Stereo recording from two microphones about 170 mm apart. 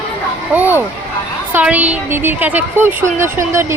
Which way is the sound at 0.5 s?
10° right (ahead or behind).